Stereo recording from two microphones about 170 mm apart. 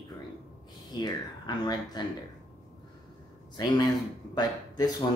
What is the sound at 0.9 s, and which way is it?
Speech, 25° left (ahead or behind).